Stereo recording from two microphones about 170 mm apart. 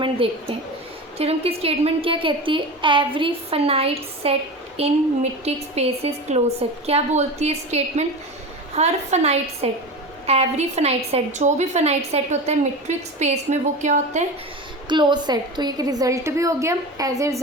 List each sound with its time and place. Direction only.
0.2 s a woman's voice: 30° right (ahead or behind)
14.8 s a woman's voice: 25° right (ahead or behind)